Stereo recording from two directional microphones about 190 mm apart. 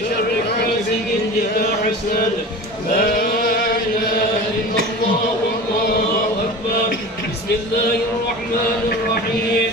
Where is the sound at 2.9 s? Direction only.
50° left (ahead or behind).